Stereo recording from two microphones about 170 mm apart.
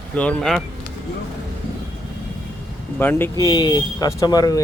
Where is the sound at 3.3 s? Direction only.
25° left (ahead or behind).